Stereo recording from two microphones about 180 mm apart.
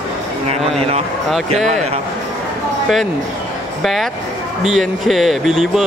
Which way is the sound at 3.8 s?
Centre (ahead or behind).